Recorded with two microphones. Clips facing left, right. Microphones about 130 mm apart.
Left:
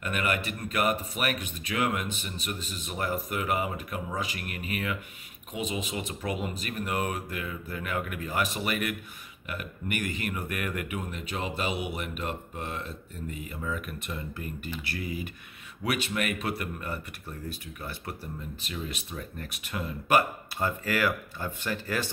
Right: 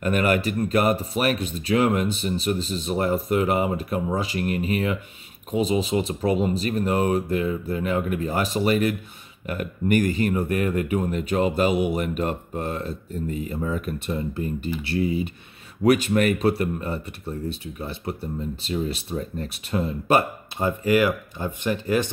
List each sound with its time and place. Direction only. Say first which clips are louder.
0.0 s speech: right 9 dB; 35° right (ahead or behind)
15.8 s speech: right 11 dB; 40° right (ahead or behind); by 22.1 s 20° right (ahead or behind)